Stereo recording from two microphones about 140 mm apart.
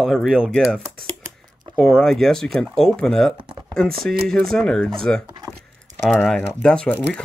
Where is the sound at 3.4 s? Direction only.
35° right (ahead or behind).